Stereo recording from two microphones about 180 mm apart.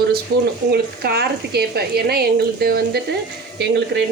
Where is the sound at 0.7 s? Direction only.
60° right (ahead or behind).